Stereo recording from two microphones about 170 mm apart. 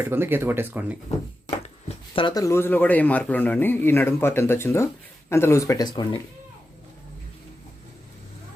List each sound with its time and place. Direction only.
0.0 s speech: 15° right (ahead or behind)
2.1 s speech: 25° left (ahead or behind)